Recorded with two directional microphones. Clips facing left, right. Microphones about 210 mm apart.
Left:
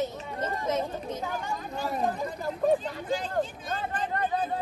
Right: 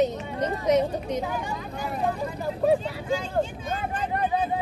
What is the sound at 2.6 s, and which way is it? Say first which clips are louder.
Speech: right 2 dB; 5° right (ahead or behind).